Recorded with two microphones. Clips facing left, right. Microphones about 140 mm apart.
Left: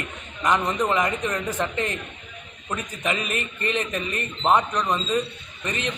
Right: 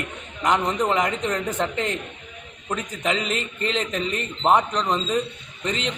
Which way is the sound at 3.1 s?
90° right.